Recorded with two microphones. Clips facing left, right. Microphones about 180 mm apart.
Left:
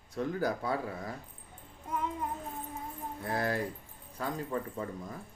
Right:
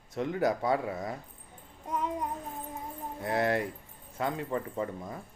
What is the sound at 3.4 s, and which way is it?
Speech, 65° right (ahead or behind).